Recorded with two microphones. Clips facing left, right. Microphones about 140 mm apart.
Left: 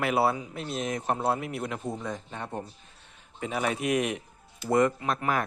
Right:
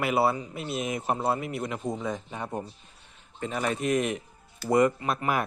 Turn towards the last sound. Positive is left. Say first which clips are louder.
# even
turn(degrees=-5)  # may be behind; listen again after turning